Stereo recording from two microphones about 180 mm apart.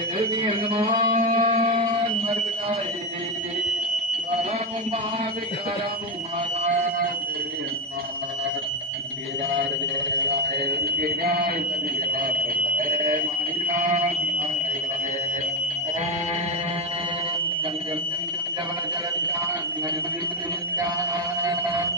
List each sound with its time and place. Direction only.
0.2 s music: 35° right (ahead or behind)
1.3 s alarm: 30° right (ahead or behind)
10.2 s alarm: 60° right (ahead or behind)
13.7 s alarm: 45° right (ahead or behind)
21.4 s a sound: 20° right (ahead or behind)